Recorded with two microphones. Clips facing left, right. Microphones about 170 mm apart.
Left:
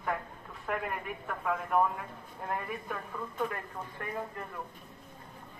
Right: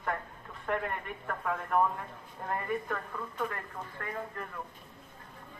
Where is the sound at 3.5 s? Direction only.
20° left (ahead or behind).